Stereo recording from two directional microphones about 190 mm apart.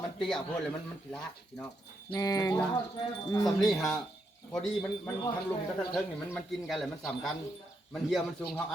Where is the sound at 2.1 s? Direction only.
20° left (ahead or behind).